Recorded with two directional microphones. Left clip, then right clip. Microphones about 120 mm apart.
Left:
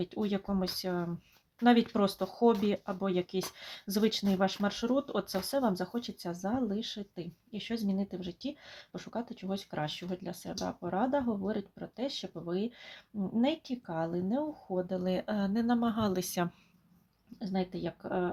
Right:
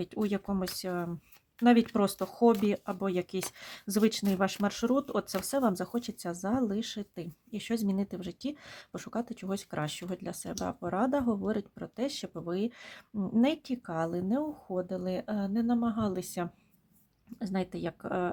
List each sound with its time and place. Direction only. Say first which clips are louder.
0.0 s speech: right 1 dB; 25° right (ahead or behind)
17.4 s speech: right 1 dB; 35° right (ahead or behind)